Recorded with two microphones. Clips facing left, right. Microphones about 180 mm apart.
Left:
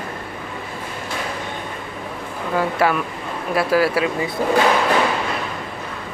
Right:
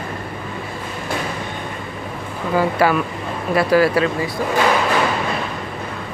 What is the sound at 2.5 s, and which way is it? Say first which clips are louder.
Speech: right 2 dB; centre (ahead or behind).